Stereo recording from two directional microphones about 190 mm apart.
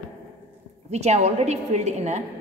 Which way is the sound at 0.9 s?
35° right (ahead or behind).